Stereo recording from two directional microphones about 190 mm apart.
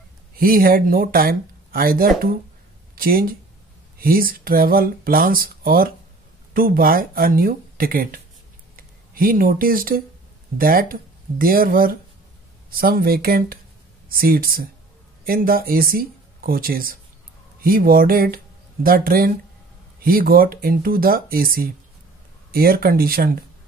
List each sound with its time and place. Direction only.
0.4 s speech: 50° right (ahead or behind)